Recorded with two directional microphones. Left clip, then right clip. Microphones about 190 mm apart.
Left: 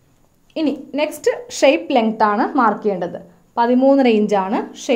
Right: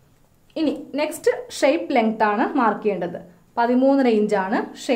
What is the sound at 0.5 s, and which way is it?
A woman's voice, 30° left (ahead or behind).